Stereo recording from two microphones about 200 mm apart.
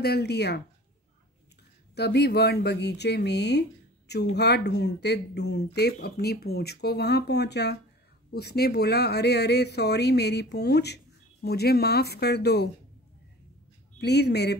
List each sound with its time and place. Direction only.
0.0 s speech: 55° left (ahead or behind)
2.0 s speech: 55° left (ahead or behind)
13.9 s speech: 55° left (ahead or behind)